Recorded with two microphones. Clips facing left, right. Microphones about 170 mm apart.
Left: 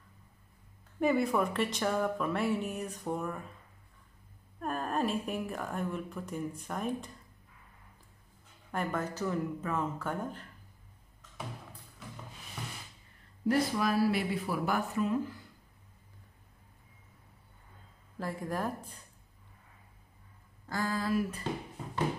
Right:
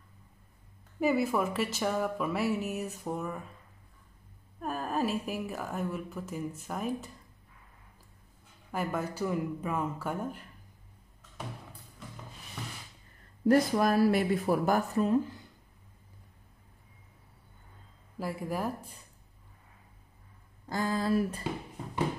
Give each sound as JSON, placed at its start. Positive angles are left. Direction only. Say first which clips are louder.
{"t": 0.9, "sound": "a woman's voice", "louder": "even", "side_deg": -5}
{"t": 4.6, "sound": "a woman's voice", "louder": "right 1 dB", "side_deg": 0}
{"t": 8.7, "sound": "speech", "louder": "right 1 dB", "side_deg": -10}
{"t": 13.5, "sound": "speech", "louder": "right 4 dB", "side_deg": -45}
{"t": 18.2, "sound": "speech", "louder": "right 1 dB", "side_deg": -10}
{"t": 20.6, "sound": "speech", "louder": "right 3 dB", "side_deg": -20}